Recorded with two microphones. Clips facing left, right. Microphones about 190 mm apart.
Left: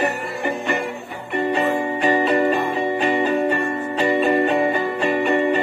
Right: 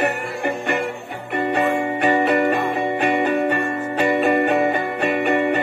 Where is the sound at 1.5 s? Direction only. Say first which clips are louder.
Right 3 dB; 65° right (ahead or behind).